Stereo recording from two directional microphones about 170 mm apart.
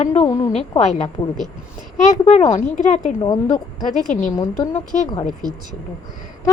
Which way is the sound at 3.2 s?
25° left (ahead or behind).